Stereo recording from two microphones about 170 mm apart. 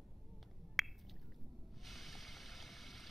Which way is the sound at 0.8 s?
Centre (ahead or behind).